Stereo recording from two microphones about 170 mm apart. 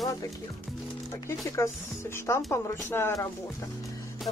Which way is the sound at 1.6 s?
15° left (ahead or behind).